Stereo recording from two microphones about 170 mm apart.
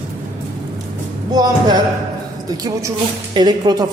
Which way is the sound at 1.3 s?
25° right (ahead or behind).